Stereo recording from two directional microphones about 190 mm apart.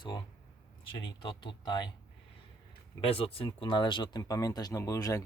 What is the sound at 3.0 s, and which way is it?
Speech, 30° left (ahead or behind).